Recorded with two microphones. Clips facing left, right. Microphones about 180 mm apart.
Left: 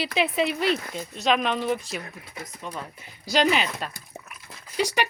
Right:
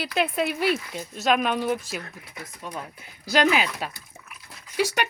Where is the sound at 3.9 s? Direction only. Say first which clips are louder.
Left 5 dB; 45° left (ahead or behind).